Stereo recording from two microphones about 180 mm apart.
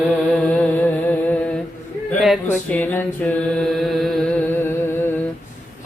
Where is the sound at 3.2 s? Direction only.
5° left (ahead or behind).